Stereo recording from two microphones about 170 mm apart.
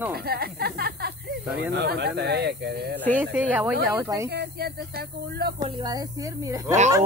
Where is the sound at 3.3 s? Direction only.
10° right (ahead or behind).